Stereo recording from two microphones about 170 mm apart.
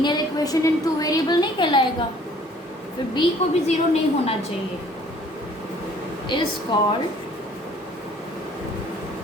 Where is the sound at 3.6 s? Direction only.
35° left (ahead or behind).